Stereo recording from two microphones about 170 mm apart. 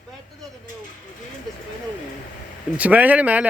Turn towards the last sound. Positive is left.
turn(degrees=-10)  # may be behind; listen again after turning